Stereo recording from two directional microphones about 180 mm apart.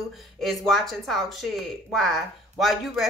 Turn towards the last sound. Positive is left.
turn(degrees=0)  # may be behind; listen again after turning